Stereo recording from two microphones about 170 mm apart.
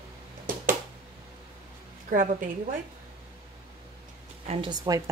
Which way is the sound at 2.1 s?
55° right (ahead or behind).